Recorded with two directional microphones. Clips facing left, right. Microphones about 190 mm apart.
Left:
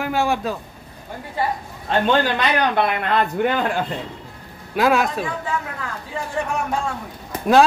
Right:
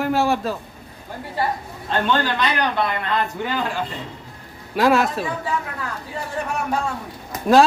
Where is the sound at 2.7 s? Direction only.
60° left (ahead or behind).